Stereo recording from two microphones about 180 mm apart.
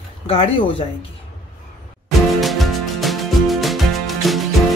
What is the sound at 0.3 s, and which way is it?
Speech, 30° left (ahead or behind).